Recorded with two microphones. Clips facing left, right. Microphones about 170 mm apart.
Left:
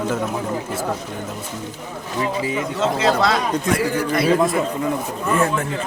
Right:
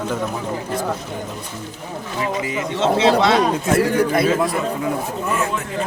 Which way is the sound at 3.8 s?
60° right (ahead or behind).